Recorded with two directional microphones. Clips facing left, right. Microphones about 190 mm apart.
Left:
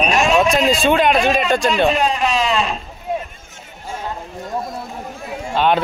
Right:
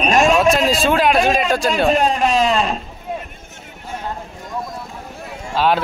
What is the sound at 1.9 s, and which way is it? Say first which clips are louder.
Speech: right 2 dB; 45° right (ahead or behind).